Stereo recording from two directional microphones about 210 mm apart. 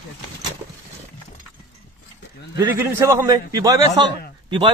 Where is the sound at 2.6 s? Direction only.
15° right (ahead or behind).